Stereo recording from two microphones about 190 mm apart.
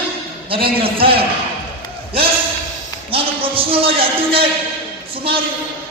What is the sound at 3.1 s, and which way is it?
Speech, 30° right (ahead or behind).